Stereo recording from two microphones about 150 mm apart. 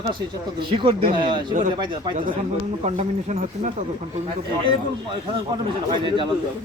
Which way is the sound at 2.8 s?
50° right (ahead or behind).